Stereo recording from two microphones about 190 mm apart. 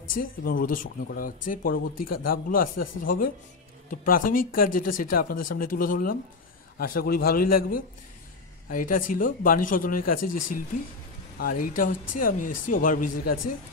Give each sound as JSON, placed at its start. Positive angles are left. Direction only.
{"t": 0.2, "sound": "speech", "side_deg": 50}